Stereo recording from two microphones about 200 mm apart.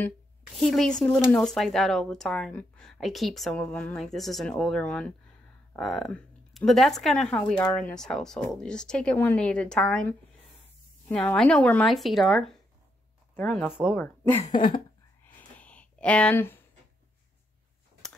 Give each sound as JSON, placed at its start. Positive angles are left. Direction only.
{"t": 0.6, "sound": "speech", "side_deg": 0}
{"t": 14.3, "sound": "speech", "side_deg": 20}
{"t": 15.5, "sound": "a sound", "side_deg": 5}